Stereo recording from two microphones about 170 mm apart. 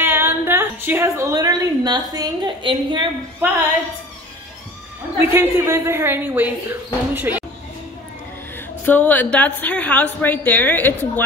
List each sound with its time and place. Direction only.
0.0 s a woman's voice: 15° right (ahead or behind)
5.2 s speech: 15° right (ahead or behind)
8.8 s a woman's voice: 10° left (ahead or behind)